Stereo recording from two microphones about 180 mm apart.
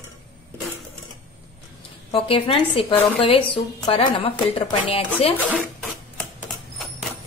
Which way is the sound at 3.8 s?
30° left (ahead or behind).